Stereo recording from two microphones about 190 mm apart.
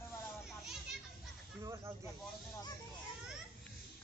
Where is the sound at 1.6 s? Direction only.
15° right (ahead or behind).